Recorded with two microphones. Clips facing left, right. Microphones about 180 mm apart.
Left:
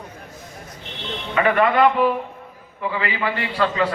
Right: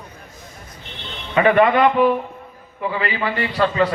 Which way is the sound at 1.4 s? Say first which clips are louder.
Right 2 dB; 20° right (ahead or behind).